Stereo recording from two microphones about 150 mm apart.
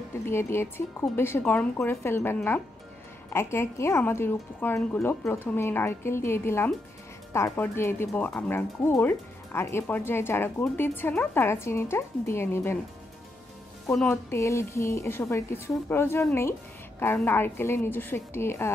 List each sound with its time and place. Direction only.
0.2 s speech: 15° left (ahead or behind)
13.8 s a woman's voice: 5° left (ahead or behind)
14.3 s a woman's voice: 20° left (ahead or behind)